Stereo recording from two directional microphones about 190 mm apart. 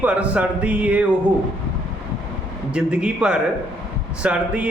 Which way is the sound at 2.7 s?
5° right (ahead or behind).